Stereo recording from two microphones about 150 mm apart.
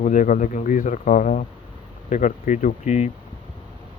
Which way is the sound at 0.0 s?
60° left (ahead or behind).